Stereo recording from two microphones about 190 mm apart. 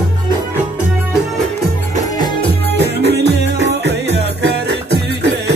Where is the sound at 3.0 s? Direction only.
65° right (ahead or behind).